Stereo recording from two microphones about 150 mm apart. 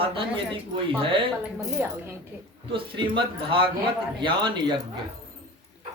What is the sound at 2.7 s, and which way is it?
Speech, 35° right (ahead or behind).